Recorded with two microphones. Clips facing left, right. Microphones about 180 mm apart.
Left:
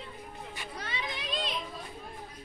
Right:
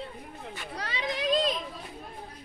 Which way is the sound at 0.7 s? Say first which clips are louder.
Right 3 dB; 90° right.